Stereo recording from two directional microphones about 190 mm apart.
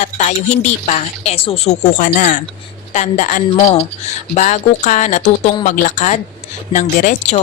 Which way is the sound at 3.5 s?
25° left (ahead or behind).